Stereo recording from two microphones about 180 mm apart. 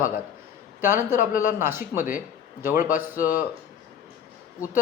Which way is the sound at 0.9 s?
50° left (ahead or behind).